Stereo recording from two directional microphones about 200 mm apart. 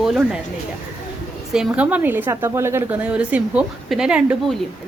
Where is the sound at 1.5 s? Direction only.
5° right (ahead or behind).